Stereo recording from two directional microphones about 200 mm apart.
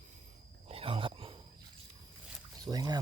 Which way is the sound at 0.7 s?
30° right (ahead or behind).